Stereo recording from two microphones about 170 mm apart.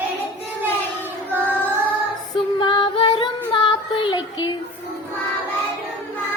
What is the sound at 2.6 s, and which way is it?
Music, 25° left (ahead or behind).